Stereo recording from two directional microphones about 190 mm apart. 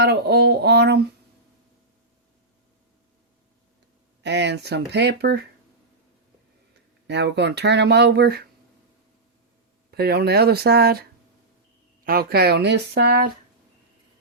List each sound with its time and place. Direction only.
0.0 s a sound: 55° right (ahead or behind)
4.2 s speech: 65° right (ahead or behind)
7.1 s speech: 65° right (ahead or behind)
9.9 s speech: 55° right (ahead or behind)
12.0 s speech: 55° right (ahead or behind)